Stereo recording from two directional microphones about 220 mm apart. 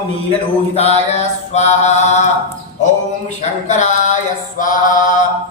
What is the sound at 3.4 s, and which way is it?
Mantra, 35° left (ahead or behind).